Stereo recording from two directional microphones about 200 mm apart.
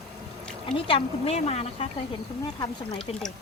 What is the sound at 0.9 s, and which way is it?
A woman's voice, 30° left (ahead or behind).